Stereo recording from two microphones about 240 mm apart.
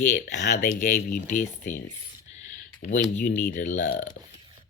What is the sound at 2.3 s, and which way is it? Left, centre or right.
Computer keyboard, left.